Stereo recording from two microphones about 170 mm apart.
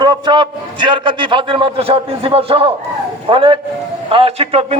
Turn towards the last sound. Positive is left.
turn(degrees=-35)  # may be behind; listen again after turning